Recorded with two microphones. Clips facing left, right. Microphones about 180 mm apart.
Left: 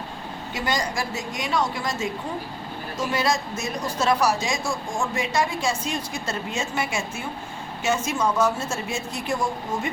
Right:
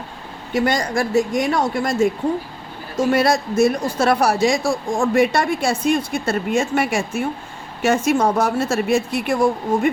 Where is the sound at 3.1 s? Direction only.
60° right (ahead or behind).